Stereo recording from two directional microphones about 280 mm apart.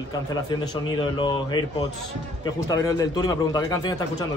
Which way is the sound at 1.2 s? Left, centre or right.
Centre.